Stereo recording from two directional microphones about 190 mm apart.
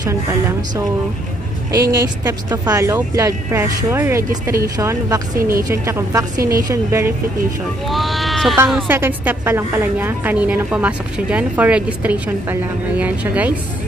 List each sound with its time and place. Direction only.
0.0 s a woman's voice: 15° right (ahead or behind)
7.9 s sheep: centre (ahead or behind)
8.6 s a woman's voice: 10° right (ahead or behind)